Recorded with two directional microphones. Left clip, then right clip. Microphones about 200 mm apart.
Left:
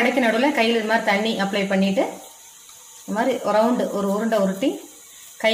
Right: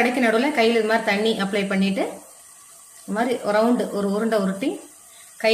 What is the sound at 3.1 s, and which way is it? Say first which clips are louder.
Speech: left 1 dB; 10° right (ahead or behind).